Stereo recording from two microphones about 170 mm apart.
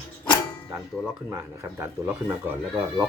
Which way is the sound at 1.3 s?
15° right (ahead or behind).